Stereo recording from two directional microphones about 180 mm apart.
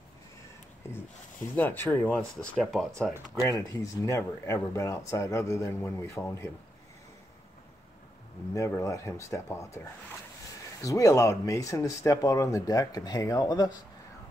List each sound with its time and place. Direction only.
0.9 s speech: 10° left (ahead or behind)
3.1 s speech: 15° right (ahead or behind)
3.5 s speech: 20° left (ahead or behind)
8.5 s speech: 15° left (ahead or behind)
10.8 s speech: 20° left (ahead or behind)